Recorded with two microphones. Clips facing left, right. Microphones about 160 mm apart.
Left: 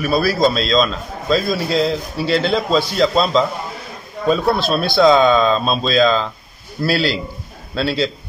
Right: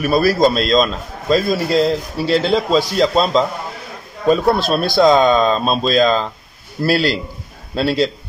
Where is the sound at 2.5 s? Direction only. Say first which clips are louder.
Right 2 dB; 40° right (ahead or behind).